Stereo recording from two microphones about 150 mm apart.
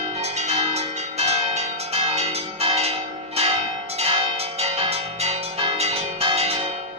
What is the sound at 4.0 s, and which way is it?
Change ringing, 40° right (ahead or behind).